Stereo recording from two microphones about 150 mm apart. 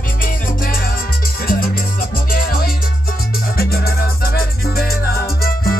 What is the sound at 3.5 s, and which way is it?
Music, 90° left.